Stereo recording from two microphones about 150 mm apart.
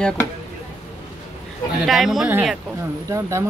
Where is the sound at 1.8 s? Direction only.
Centre (ahead or behind).